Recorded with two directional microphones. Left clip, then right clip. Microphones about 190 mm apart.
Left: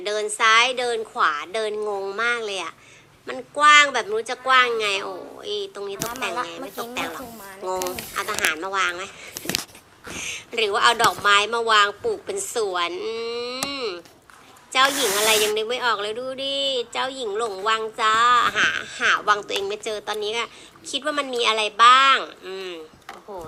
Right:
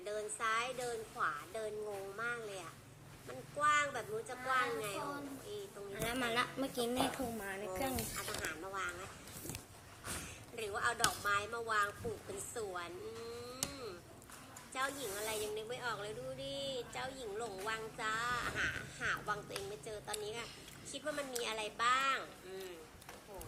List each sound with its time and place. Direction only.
0.0 s speech: 45° left (ahead or behind)
7.7 s speech: 45° left (ahead or behind)
10.5 s speech: 45° left (ahead or behind)